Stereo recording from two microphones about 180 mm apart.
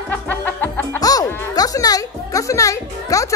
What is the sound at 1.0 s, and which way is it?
Speech, 20° left (ahead or behind).